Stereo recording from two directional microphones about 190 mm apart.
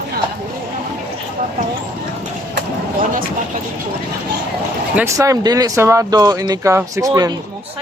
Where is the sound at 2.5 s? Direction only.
45° right (ahead or behind).